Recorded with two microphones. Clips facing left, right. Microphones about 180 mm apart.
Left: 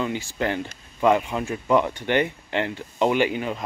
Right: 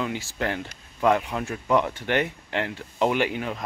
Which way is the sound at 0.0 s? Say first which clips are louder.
Left 2 dB; centre (ahead or behind).